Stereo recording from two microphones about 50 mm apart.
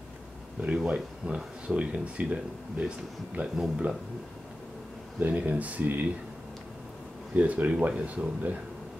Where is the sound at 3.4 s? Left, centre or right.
Right.